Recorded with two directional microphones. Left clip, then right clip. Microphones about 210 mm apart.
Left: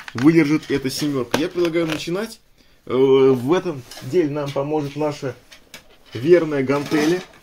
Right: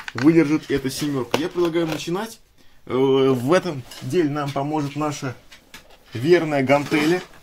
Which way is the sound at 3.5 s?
35° right (ahead or behind).